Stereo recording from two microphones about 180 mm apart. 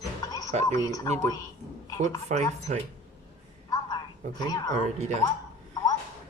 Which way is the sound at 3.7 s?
25° left (ahead or behind).